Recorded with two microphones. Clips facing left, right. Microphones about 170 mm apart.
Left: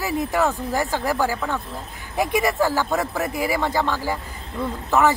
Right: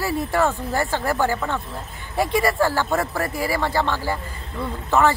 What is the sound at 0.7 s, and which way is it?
Speech, 10° left (ahead or behind).